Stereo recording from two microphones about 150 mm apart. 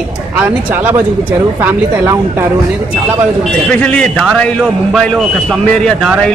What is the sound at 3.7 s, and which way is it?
A man's voice, 10° left (ahead or behind).